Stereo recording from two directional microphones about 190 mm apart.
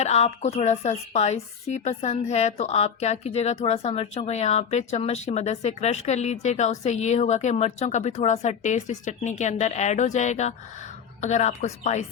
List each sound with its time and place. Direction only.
0.0 s a woman's voice: 35° left (ahead or behind)